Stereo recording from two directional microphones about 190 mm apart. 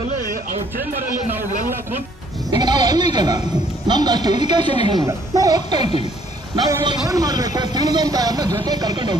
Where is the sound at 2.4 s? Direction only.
20° right (ahead or behind).